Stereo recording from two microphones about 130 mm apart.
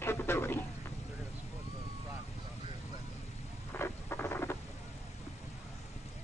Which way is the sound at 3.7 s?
20° left (ahead or behind).